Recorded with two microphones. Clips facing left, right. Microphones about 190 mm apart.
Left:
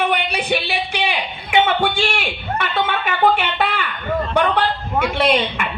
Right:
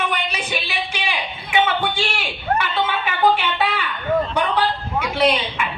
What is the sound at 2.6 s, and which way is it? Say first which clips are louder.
A woman's voice: left 1 dB; 55° left (ahead or behind).